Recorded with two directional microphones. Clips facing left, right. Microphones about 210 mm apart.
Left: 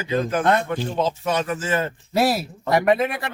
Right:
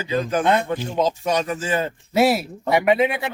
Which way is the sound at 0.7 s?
15° right (ahead or behind).